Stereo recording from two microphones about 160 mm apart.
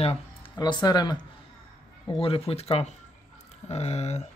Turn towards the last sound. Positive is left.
turn(degrees=45)  # may be behind; listen again after turning